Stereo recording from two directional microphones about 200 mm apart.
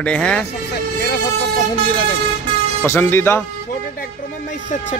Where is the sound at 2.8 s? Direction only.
10° left (ahead or behind).